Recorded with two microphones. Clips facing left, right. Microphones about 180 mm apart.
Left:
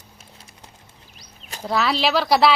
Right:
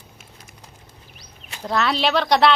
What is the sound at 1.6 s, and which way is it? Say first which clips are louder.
Speech: even; 5° left (ahead or behind).